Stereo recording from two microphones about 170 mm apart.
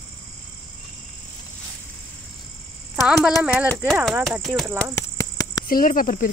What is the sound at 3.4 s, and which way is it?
Speech, 10° right (ahead or behind).